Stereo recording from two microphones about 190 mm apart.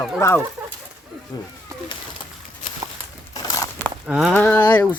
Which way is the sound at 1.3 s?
20° left (ahead or behind).